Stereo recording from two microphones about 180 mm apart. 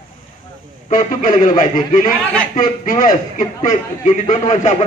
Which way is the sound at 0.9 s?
45° left (ahead or behind).